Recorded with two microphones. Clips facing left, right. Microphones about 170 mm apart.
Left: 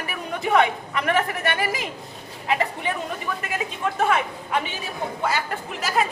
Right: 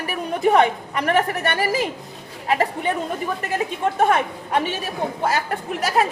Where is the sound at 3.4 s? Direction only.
40° right (ahead or behind).